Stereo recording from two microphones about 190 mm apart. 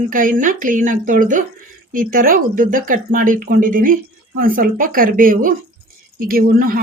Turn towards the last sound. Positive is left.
turn(degrees=-50)  # may be behind; listen again after turning